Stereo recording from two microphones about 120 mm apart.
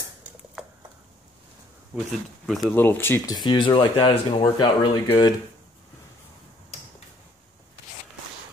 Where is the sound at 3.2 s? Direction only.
35° left (ahead or behind).